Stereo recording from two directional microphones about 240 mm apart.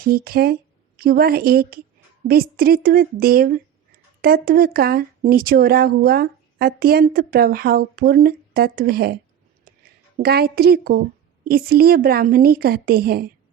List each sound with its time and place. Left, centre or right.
0.0 s speech: right
9.7 s a sound: right
10.2 s speech: right